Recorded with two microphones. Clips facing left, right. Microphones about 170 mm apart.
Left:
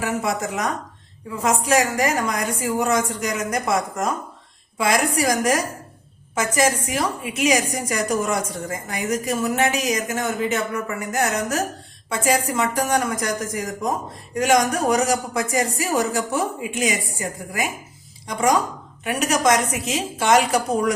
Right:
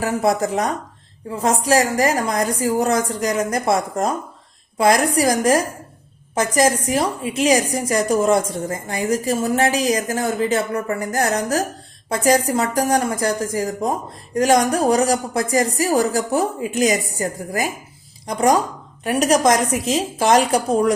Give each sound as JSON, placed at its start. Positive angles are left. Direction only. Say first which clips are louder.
{"t": 0.0, "sound": "a woman's voice", "louder": "right 5 dB", "side_deg": -35}